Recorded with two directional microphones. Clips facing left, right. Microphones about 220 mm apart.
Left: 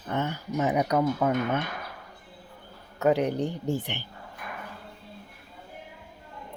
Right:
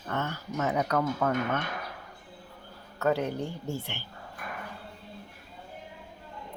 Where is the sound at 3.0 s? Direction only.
15° left (ahead or behind).